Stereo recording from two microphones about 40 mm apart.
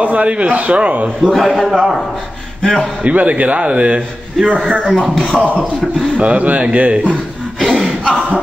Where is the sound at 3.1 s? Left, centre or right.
Right.